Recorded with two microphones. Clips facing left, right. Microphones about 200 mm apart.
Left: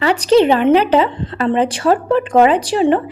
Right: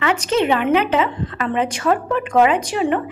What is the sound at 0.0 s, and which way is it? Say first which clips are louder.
A woman's voice: left 7 dB; 35° left (ahead or behind).